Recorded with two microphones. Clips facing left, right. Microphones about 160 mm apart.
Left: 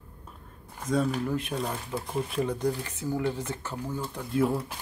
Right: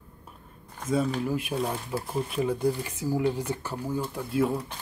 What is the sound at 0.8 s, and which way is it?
Speech, centre (ahead or behind).